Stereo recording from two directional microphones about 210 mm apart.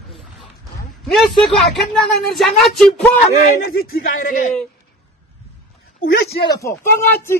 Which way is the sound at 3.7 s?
45° left (ahead or behind).